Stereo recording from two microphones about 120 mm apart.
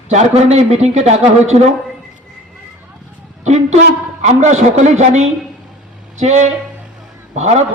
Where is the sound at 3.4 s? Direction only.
70° right (ahead or behind).